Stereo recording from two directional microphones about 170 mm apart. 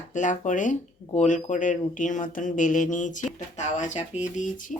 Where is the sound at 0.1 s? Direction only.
45° left (ahead or behind).